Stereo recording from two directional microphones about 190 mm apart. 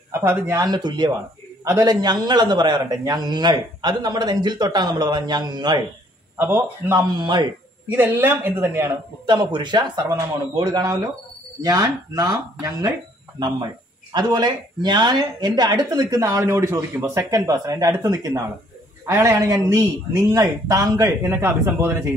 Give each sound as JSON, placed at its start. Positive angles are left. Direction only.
{"t": 0.1, "sound": "a man's voice", "side_deg": -10}
{"t": 0.7, "sound": "a man's voice", "side_deg": -25}
{"t": 6.3, "sound": "a man's voice", "side_deg": -10}
{"t": 7.2, "sound": "a man's voice", "side_deg": -25}
{"t": 7.9, "sound": "a man's voice", "side_deg": -10}
{"t": 9.2, "sound": "a man's voice", "side_deg": -25}
{"t": 14.1, "sound": "a man's voice", "side_deg": -20}